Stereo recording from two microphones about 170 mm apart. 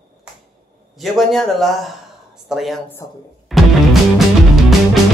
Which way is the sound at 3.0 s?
20° left (ahead or behind).